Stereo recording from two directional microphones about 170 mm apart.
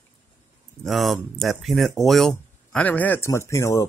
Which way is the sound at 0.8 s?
Centre (ahead or behind).